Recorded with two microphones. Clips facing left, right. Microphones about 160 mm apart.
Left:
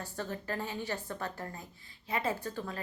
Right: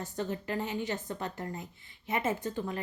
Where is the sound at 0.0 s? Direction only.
20° right (ahead or behind).